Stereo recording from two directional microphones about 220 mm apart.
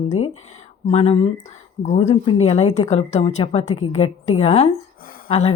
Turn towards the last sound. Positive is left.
turn(degrees=25)  # may be behind; listen again after turning